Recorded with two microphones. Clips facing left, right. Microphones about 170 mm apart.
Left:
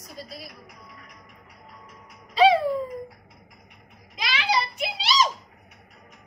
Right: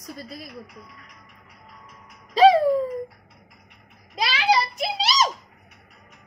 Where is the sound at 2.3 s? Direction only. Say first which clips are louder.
Right 3 dB; 40° right (ahead or behind).